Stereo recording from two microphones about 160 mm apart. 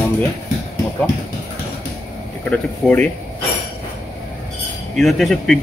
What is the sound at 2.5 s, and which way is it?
Speech, 10° left (ahead or behind).